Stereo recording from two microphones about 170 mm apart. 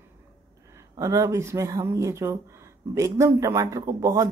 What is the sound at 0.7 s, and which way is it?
A woman's voice, 20° right (ahead or behind).